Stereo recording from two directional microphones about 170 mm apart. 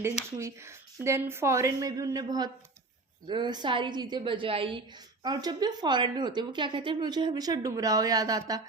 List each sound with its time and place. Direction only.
0.3 s a woman's voice: 15° right (ahead or behind)